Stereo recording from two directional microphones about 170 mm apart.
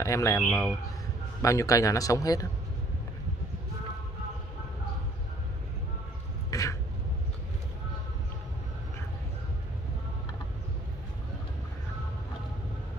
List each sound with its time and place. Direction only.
0.0 s speech: 20° left (ahead or behind)
0.4 s a man's voice: centre (ahead or behind)
1.4 s speech: 20° left (ahead or behind)
6.5 s a sound: 20° left (ahead or behind)